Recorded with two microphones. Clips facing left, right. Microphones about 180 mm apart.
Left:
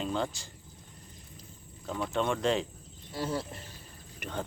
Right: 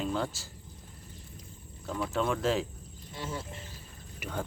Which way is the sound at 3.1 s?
35° left (ahead or behind).